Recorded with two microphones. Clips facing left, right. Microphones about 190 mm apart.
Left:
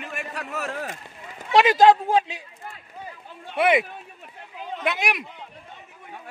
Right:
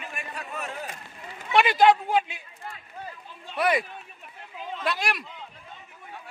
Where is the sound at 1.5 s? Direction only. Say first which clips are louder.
Left 4 dB; 40° left (ahead or behind).